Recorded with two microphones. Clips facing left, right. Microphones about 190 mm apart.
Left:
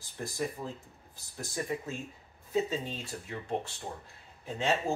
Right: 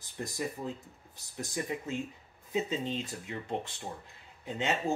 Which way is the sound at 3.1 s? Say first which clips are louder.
Left 1 dB; 15° right (ahead or behind).